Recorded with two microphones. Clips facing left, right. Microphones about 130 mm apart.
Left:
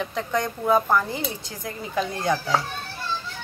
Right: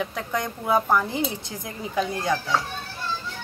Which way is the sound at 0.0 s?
5° right (ahead or behind).